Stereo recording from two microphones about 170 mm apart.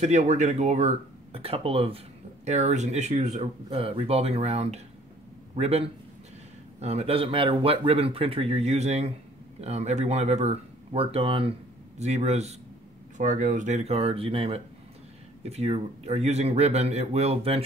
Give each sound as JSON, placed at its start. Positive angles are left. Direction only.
{"t": 0.0, "sound": "speech", "side_deg": -45}